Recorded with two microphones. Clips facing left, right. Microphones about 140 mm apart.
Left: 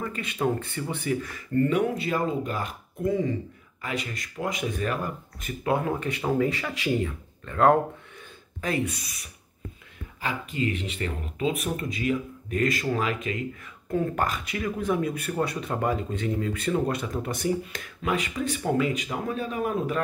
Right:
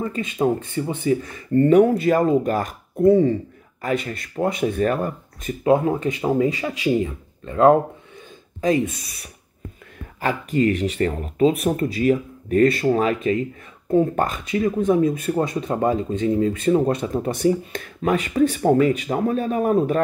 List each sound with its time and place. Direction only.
0.0 s speech: 30° right (ahead or behind)
1.7 s speech: 40° right (ahead or behind)
5.6 s speech: 25° right (ahead or behind)
10.2 s speech: 50° right (ahead or behind)
13.8 s speech: 25° right (ahead or behind)
18.3 s speech: 55° right (ahead or behind)
18.7 s speech: 40° right (ahead or behind)